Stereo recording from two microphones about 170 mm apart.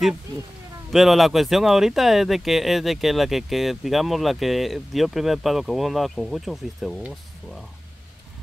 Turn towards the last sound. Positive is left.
turn(degrees=0)  # may be behind; listen again after turning